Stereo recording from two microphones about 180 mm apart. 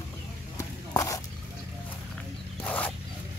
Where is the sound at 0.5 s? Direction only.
20° left (ahead or behind).